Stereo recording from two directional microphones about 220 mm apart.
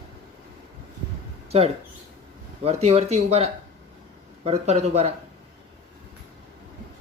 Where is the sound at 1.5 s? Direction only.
25° right (ahead or behind).